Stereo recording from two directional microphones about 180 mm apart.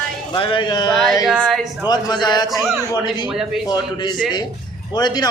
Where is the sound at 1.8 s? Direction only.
25° left (ahead or behind).